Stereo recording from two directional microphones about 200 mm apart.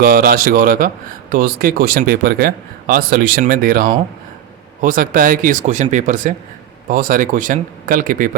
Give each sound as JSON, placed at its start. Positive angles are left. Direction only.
{"t": 0.0, "sound": "speech", "side_deg": -50}